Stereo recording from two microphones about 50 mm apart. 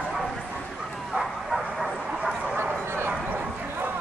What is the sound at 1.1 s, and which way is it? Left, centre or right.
Bow-wow, centre.